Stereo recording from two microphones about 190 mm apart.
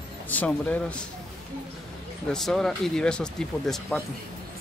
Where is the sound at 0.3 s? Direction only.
10° left (ahead or behind).